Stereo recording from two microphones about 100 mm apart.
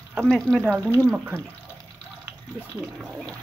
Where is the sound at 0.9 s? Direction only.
30° right (ahead or behind).